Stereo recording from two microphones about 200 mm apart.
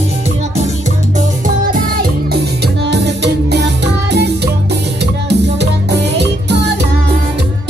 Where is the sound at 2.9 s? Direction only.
60° right (ahead or behind).